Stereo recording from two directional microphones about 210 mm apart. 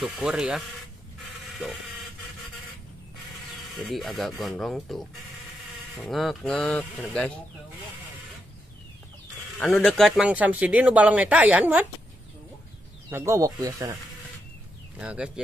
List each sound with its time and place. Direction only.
0.0 s speech: centre (ahead or behind)
1.4 s music: centre (ahead or behind)
3.7 s speech: centre (ahead or behind)
9.6 s speech: 5° left (ahead or behind)
13.1 s speech: 15° right (ahead or behind)
15.0 s speech: 5° right (ahead or behind)